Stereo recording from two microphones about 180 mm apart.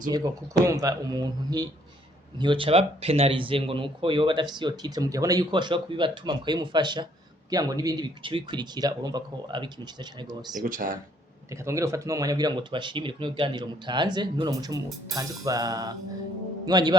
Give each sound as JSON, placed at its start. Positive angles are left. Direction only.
{"t": 0.1, "sound": "speech", "side_deg": -15}
{"t": 10.6, "sound": "speech", "side_deg": -50}
{"t": 11.5, "sound": "speech", "side_deg": -15}